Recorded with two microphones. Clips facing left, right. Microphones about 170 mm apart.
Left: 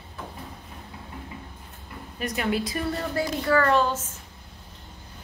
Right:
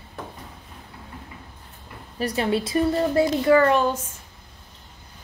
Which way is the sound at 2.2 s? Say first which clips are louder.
Right 3 dB; 30° right (ahead or behind).